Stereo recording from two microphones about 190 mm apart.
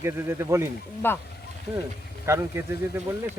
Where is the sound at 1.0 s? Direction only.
10° left (ahead or behind).